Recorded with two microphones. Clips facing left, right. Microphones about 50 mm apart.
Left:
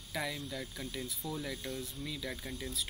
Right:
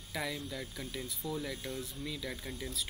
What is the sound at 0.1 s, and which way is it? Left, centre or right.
Speech, centre.